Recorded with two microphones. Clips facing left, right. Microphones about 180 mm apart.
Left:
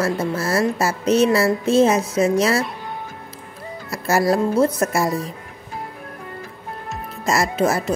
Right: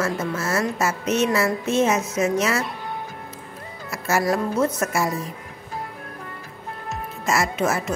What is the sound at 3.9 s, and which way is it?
Speech, 35° left (ahead or behind).